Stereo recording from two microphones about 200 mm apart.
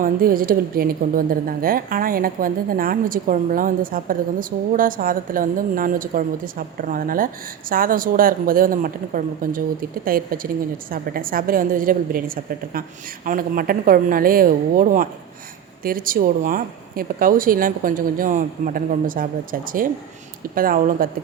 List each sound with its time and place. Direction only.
0.0 s a woman's voice: 45° right (ahead or behind)